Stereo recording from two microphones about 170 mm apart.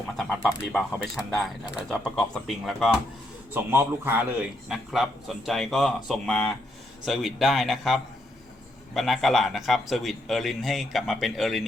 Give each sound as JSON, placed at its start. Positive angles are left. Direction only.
{"t": 0.2, "sound": "a man's voice", "side_deg": 5}
{"t": 3.5, "sound": "a man's voice", "side_deg": -15}